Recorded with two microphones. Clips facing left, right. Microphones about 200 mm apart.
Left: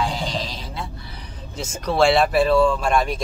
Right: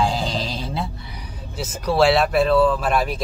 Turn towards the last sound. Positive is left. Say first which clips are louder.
# even
turn(degrees=-5)  # may be behind; listen again after turning